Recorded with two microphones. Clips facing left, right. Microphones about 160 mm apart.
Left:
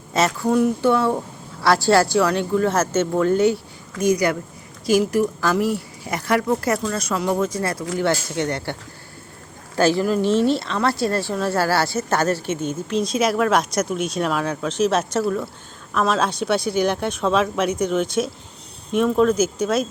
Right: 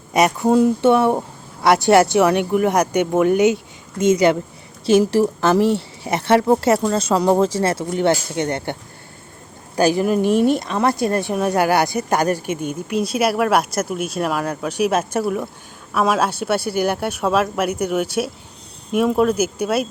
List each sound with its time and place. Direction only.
0.1 s a woman's voice: 20° right (ahead or behind)
9.7 s a woman's voice: 15° right (ahead or behind)